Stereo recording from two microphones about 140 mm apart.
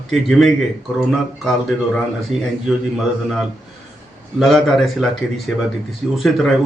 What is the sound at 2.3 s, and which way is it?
Speech, 50° right (ahead or behind).